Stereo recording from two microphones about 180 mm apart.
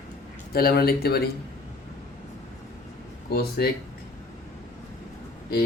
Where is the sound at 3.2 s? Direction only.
65° left (ahead or behind).